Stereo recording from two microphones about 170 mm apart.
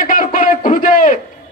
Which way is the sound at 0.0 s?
50° left (ahead or behind).